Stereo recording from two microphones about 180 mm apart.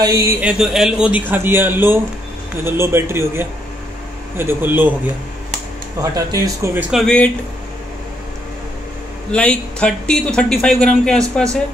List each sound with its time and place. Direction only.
0.0 s a man's voice: 15° right (ahead or behind)
6.0 s a man's voice: 20° right (ahead or behind); by 7.2 s centre (ahead or behind)
9.3 s speech: 5° left (ahead or behind)